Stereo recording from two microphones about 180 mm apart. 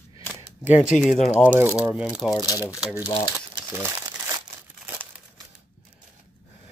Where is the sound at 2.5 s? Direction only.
20° left (ahead or behind).